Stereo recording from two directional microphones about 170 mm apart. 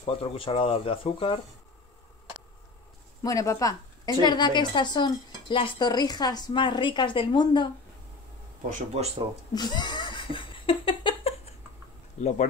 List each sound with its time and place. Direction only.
0.0 s speech: 35° left (ahead or behind)
3.2 s a woman's voice: 20° left (ahead or behind)
9.5 s laughter: 25° left (ahead or behind)
12.2 s speech: 45° left (ahead or behind)